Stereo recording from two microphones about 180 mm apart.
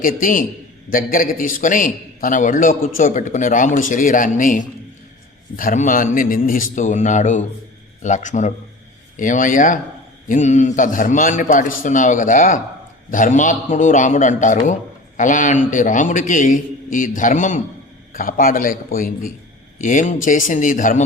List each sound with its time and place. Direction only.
0.0 s a man's voice: 50° left (ahead or behind)